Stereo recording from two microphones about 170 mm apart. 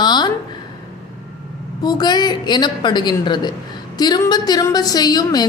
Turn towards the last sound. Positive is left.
turn(degrees=25)  # may be behind; listen again after turning